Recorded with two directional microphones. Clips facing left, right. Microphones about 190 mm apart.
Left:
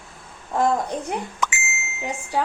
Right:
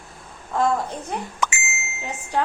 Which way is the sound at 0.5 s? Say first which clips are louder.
Left 1 dB; 15° left (ahead or behind).